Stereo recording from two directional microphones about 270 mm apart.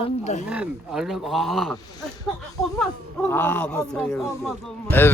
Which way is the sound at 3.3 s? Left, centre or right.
Centre.